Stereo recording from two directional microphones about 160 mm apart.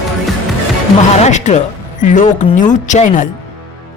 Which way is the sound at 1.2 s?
45° left (ahead or behind).